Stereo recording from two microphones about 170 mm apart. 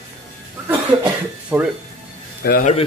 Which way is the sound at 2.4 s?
60° left (ahead or behind).